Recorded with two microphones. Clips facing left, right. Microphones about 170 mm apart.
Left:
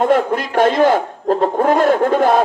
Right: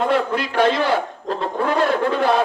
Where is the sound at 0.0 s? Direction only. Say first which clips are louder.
Left 5 dB; 45° left (ahead or behind).